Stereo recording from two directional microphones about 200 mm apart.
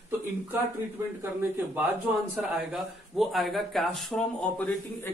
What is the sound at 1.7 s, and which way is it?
A man's voice, 10° right (ahead or behind).